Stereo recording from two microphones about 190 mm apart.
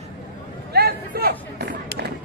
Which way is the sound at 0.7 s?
55° right (ahead or behind).